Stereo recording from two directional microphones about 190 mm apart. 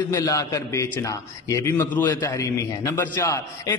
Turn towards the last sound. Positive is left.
turn(degrees=15)  # may be behind; listen again after turning